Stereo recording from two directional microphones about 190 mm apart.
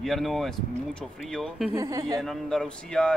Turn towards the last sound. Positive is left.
turn(degrees=5)  # may be behind; listen again after turning